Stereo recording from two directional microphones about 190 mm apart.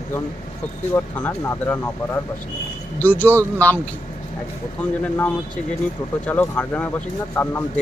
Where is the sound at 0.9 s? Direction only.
10° left (ahead or behind).